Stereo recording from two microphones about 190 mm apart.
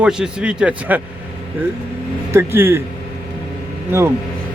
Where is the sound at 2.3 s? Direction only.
10° right (ahead or behind).